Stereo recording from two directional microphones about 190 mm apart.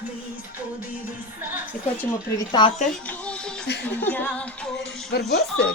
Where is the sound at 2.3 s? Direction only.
25° left (ahead or behind).